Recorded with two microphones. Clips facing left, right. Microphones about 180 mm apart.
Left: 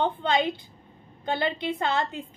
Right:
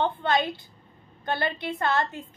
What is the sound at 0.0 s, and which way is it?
A woman's voice, 15° left (ahead or behind).